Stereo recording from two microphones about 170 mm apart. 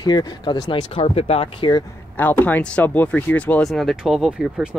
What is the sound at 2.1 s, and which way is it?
Speech, 10° left (ahead or behind).